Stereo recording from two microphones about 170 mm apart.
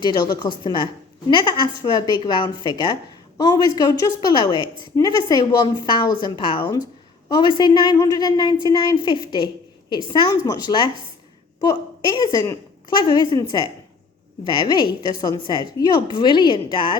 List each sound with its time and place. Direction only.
0.0 s a woman's voice: 25° left (ahead or behind)
12.1 s a woman's voice: 25° left (ahead or behind)